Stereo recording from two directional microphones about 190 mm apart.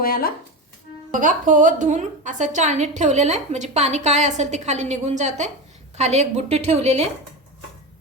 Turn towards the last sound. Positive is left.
turn(degrees=-35)  # may be behind; listen again after turning